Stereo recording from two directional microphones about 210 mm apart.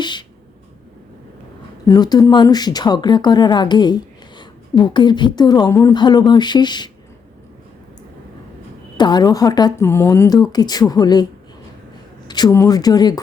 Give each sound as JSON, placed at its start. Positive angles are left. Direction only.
{"t": 0.0, "sound": "a sound", "side_deg": 20}
{"t": 1.9, "sound": "speech", "side_deg": 20}
{"t": 9.0, "sound": "speech", "side_deg": 20}
{"t": 12.3, "sound": "speech", "side_deg": 15}